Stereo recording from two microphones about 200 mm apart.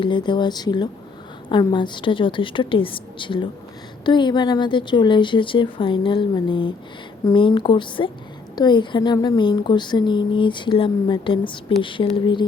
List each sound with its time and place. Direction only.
0.0 s a woman's voice: 25° left (ahead or behind)